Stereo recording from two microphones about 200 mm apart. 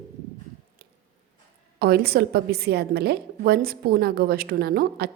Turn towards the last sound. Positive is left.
turn(degrees=-50)  # may be behind; listen again after turning